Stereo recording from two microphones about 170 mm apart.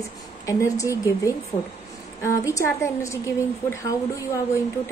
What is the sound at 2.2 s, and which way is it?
Speech, 20° left (ahead or behind).